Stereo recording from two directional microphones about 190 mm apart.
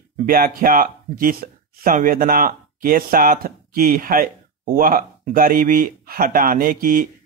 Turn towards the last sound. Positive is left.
turn(degrees=-50)  # may be behind; listen again after turning